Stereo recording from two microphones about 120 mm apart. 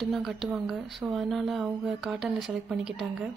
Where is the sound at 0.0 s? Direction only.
Centre (ahead or behind).